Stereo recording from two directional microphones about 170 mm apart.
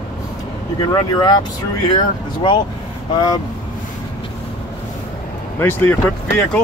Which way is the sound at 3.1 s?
25° left (ahead or behind).